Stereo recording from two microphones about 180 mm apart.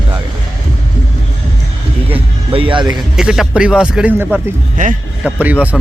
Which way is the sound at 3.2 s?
5° right (ahead or behind).